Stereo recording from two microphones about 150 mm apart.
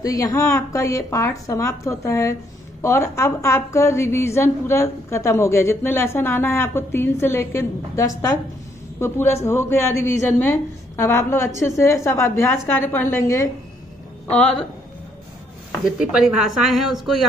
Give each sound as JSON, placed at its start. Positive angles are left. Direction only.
{"t": 0.0, "sound": "a woman's voice", "side_deg": 25}
{"t": 14.3, "sound": "speech", "side_deg": 5}
{"t": 15.8, "sound": "speech", "side_deg": -5}